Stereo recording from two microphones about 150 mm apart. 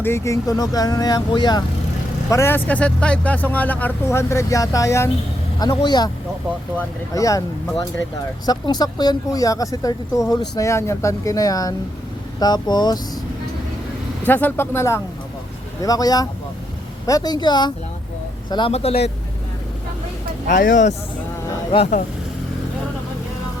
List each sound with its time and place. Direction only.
0.0 s speech: 15° left (ahead or behind)
2.3 s speech: 15° left (ahead or behind)
7.1 s speech: 20° left (ahead or behind)
8.4 s speech: 25° left (ahead or behind)
14.3 s speech: 15° left (ahead or behind); by 17.7 s 30° left (ahead or behind)
18.7 s speech: 45° left (ahead or behind)
20.5 s speech: 55° left (ahead or behind)
21.7 s speech: 35° left (ahead or behind)